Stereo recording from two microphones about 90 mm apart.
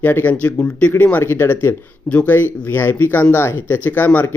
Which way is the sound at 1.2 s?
25° left (ahead or behind).